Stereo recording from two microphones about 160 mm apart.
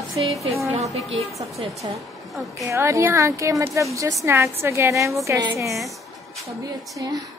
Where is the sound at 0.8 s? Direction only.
Centre (ahead or behind).